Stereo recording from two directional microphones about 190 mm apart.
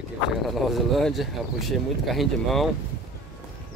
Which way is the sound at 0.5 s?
Centre (ahead or behind).